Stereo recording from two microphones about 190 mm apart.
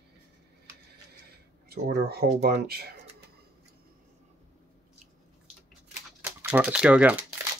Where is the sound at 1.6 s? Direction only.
55° right (ahead or behind).